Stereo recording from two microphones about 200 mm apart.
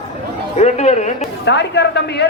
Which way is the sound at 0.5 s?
35° left (ahead or behind).